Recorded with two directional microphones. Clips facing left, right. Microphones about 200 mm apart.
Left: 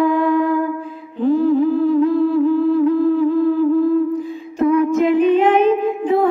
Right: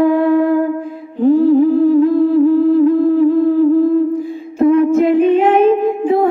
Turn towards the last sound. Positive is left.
turn(degrees=-35)  # may be behind; listen again after turning